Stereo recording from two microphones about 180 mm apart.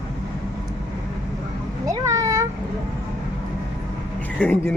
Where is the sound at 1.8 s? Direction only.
20° right (ahead or behind).